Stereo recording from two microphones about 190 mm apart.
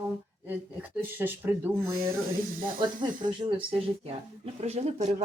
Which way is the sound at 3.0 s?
25° right (ahead or behind).